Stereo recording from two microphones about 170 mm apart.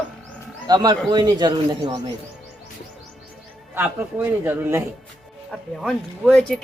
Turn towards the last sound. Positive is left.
turn(degrees=5)  # may be behind; listen again after turning